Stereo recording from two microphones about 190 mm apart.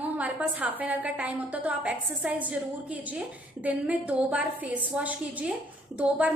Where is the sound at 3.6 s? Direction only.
10° right (ahead or behind).